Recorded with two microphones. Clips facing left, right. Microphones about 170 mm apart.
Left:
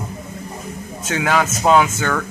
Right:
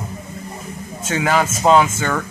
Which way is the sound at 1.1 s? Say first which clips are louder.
Right 1 dB; centre (ahead or behind).